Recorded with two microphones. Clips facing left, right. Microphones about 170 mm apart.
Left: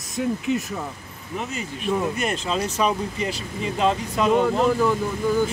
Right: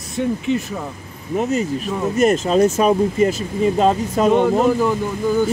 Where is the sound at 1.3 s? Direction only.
40° right (ahead or behind).